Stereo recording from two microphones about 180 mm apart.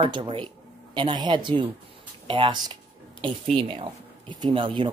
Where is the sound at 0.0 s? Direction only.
30° right (ahead or behind).